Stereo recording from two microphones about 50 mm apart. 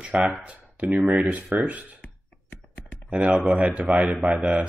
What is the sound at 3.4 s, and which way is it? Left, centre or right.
Speech, right.